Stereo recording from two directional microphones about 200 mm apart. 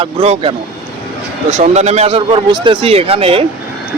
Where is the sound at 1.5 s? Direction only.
35° right (ahead or behind).